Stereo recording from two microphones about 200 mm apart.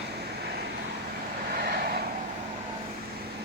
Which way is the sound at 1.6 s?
50° right (ahead or behind).